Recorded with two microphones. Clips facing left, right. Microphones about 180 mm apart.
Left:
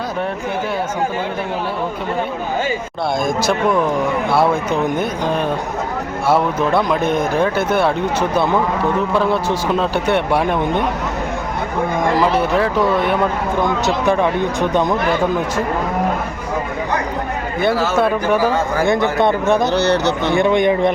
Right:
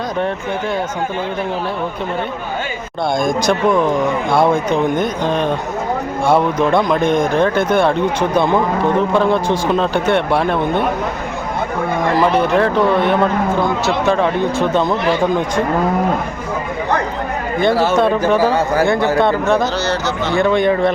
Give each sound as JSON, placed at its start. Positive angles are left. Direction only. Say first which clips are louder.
{"t": 3.2, "sound": "a man's voice", "louder": "right 2 dB", "side_deg": 5}
{"t": 9.1, "sound": "a man's voice", "louder": "right 2 dB", "side_deg": 5}
{"t": 12.3, "sound": "a man's voice", "louder": "right 2 dB", "side_deg": 10}
{"t": 18.8, "sound": "speech", "louder": "even", "side_deg": 20}
{"t": 19.7, "sound": "speech", "louder": "left 3 dB", "side_deg": 60}
{"t": 20.3, "sound": "a man's voice", "louder": "right 1 dB", "side_deg": 20}